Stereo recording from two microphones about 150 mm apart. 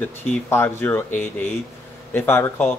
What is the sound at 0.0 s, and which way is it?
Speech, 15° left (ahead or behind).